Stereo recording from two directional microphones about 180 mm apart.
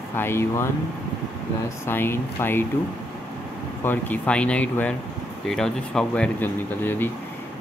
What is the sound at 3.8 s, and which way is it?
Speech, 10° left (ahead or behind).